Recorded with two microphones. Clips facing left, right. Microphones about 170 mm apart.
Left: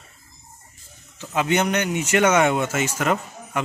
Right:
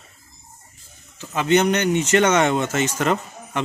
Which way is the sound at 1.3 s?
10° left (ahead or behind).